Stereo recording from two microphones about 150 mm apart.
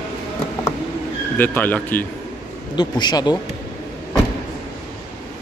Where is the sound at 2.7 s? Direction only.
30° left (ahead or behind).